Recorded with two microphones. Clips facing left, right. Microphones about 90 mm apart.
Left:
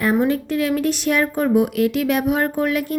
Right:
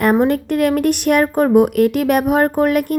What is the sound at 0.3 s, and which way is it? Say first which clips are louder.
A woman's voice: right 4 dB; 55° right (ahead or behind).